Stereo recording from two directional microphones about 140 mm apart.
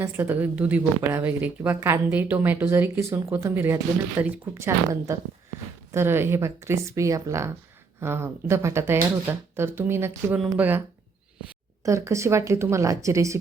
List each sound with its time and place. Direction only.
0.0 s a woman's voice: 15° right (ahead or behind)
11.9 s speech: 20° right (ahead or behind)